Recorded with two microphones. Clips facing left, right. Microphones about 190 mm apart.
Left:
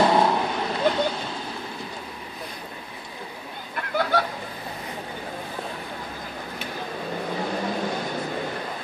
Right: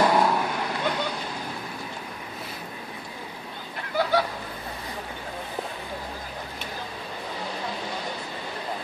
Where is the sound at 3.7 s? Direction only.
55° left (ahead or behind).